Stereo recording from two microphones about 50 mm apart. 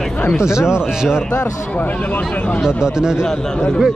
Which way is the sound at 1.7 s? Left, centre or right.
Left.